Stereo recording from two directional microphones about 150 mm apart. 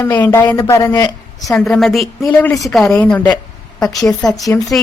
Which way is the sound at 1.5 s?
5° left (ahead or behind).